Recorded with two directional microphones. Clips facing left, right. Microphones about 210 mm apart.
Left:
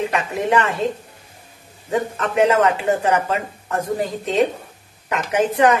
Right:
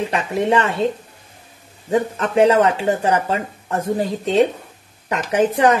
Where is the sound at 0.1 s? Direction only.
30° right (ahead or behind).